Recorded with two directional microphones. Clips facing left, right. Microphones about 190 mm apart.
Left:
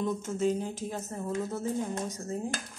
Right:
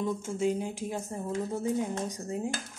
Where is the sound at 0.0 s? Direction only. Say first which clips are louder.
Even; 10° right (ahead or behind).